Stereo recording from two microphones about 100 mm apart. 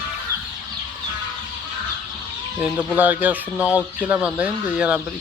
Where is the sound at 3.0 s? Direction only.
15° right (ahead or behind).